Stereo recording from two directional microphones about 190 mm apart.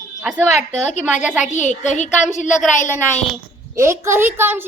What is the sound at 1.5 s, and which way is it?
A child's voice, 40° left (ahead or behind).